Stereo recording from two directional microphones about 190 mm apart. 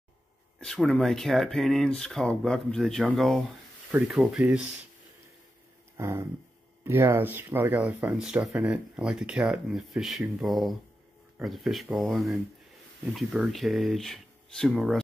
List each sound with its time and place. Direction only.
0.6 s speech: centre (ahead or behind)
5.9 s a sound: 15° right (ahead or behind)
6.8 s speech: 10° right (ahead or behind)